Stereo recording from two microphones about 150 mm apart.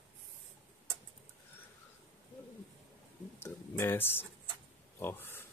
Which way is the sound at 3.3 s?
15° left (ahead or behind).